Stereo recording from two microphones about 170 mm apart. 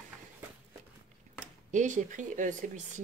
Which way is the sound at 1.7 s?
45° right (ahead or behind).